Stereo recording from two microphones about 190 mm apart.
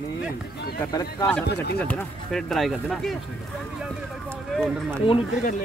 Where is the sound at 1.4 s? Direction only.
60° left (ahead or behind).